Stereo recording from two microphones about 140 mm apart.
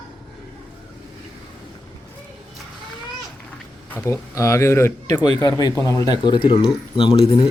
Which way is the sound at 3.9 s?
20° left (ahead or behind).